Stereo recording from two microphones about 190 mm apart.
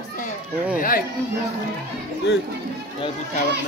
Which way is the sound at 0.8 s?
50° left (ahead or behind).